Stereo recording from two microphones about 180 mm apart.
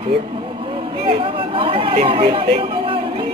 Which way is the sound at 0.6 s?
30° right (ahead or behind).